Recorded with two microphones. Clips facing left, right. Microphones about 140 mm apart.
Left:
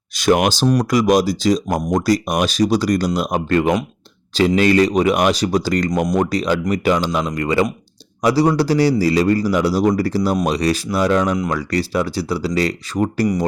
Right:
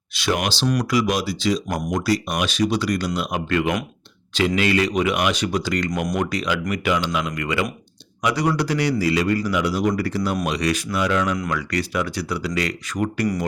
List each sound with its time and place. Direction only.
0.2 s speech: 45° left (ahead or behind)